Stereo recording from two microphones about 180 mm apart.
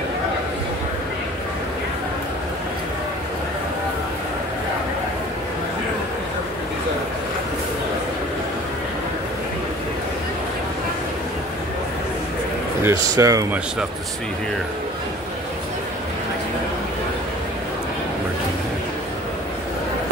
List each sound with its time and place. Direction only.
12.8 s speech: 20° right (ahead or behind)